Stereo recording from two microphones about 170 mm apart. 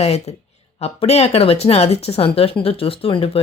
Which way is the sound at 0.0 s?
35° left (ahead or behind).